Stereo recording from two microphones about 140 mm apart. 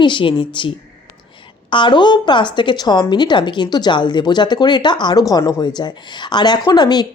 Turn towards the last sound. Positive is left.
turn(degrees=30)  # may be behind; listen again after turning